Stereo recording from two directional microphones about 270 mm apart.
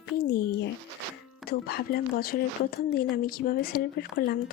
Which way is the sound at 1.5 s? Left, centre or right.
Left.